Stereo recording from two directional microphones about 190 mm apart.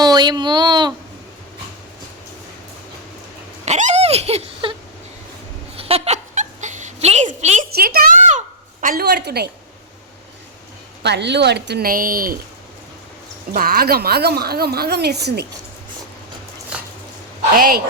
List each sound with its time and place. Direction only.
0.0 s speech: 20° right (ahead or behind)
3.7 s speech: 40° right (ahead or behind)
5.7 s giggle: 30° right (ahead or behind); by 9.5 s 60° right (ahead or behind)
11.0 s a woman's voice: 65° right (ahead or behind); by 12.4 s 50° right (ahead or behind)
13.6 s a woman's voice: 50° right (ahead or behind)
17.5 s speech: 50° right (ahead or behind)